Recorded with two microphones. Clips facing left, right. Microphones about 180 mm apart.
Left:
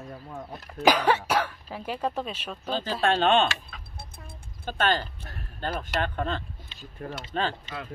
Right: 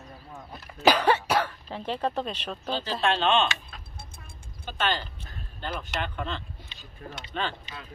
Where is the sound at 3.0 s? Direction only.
50° left (ahead or behind).